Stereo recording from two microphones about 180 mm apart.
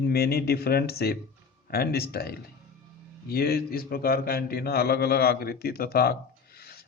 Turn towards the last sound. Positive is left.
turn(degrees=60)  # may be behind; listen again after turning